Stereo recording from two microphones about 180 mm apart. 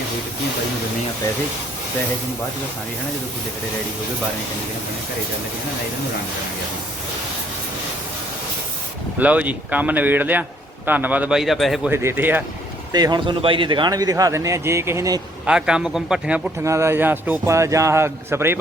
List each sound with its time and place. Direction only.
9.1 s a man's voice: 10° right (ahead or behind)
11.9 s a man's voice: 10° right (ahead or behind)
12.9 s a man's voice: 25° right (ahead or behind)
15.4 s a man's voice: 5° right (ahead or behind)